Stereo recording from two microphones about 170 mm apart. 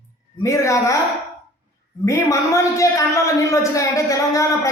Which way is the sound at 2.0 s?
20° left (ahead or behind).